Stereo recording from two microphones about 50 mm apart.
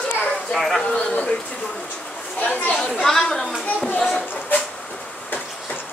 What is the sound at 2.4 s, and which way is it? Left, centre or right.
Speech, left.